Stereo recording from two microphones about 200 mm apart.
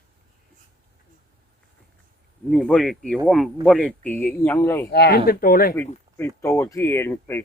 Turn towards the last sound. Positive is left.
turn(degrees=10)  # may be behind; listen again after turning